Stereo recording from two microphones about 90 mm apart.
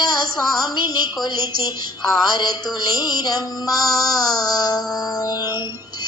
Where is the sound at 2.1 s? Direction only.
50° left (ahead or behind).